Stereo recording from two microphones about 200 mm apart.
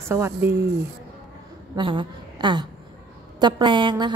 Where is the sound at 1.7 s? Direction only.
25° right (ahead or behind).